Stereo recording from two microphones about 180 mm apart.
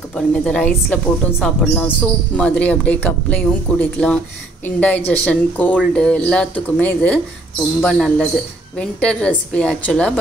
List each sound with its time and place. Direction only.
0.1 s a woman's voice: 5° left (ahead or behind)